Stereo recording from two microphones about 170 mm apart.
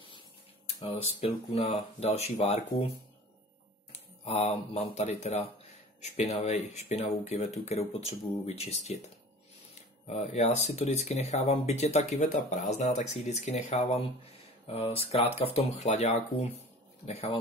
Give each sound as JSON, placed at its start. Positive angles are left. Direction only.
{"t": 0.7, "sound": "speech", "side_deg": 35}
{"t": 4.2, "sound": "speech", "side_deg": 35}
{"t": 10.0, "sound": "speech", "side_deg": 40}